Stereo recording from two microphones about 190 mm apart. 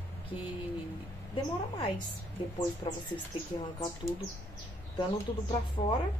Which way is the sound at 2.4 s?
25° left (ahead or behind).